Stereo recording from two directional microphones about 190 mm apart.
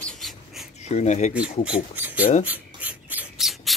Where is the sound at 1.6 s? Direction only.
10° right (ahead or behind).